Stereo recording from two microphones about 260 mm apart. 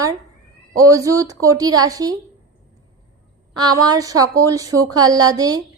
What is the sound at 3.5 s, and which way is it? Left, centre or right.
A woman's voice, centre.